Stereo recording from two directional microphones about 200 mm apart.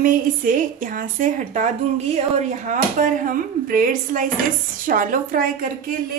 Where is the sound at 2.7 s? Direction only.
40° right (ahead or behind).